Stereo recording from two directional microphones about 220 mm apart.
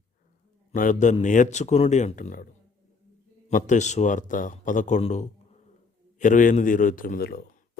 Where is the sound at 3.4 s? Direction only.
35° left (ahead or behind).